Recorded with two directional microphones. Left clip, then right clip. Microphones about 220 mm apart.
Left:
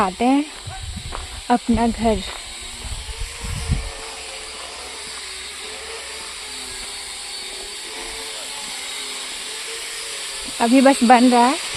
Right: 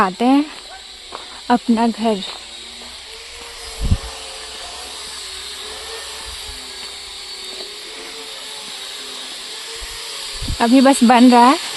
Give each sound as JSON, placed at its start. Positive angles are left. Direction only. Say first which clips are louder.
{"t": 0.0, "sound": "speech", "louder": "right 3 dB", "side_deg": -15}
{"t": 1.5, "sound": "speech", "louder": "right 2 dB", "side_deg": -15}
{"t": 10.6, "sound": "speech", "louder": "right 2 dB", "side_deg": -15}